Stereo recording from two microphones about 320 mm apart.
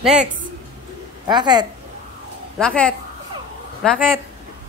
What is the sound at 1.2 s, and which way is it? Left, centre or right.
Speech, centre.